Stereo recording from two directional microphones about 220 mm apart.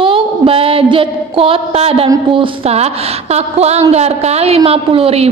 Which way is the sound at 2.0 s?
25° right (ahead or behind).